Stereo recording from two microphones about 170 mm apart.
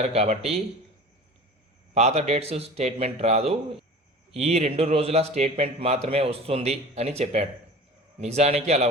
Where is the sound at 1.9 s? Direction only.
40° right (ahead or behind).